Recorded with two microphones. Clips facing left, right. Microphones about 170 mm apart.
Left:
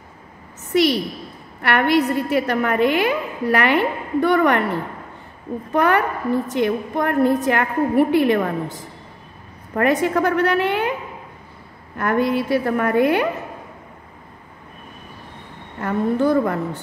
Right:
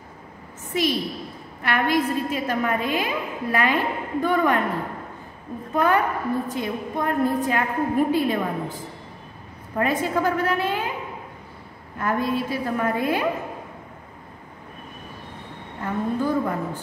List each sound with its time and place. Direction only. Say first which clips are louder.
0.7 s a woman's voice: left 6 dB; 70° left (ahead or behind)
12.0 s a woman's voice: left 5 dB; 70° left (ahead or behind)
15.8 s a woman's voice: left 6 dB; 75° left (ahead or behind)